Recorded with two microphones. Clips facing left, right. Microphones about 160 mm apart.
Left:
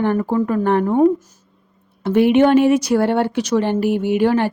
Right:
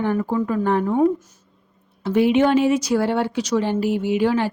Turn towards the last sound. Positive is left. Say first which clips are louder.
# left 3 dB
turn(degrees=55)  # may be behind; listen again after turning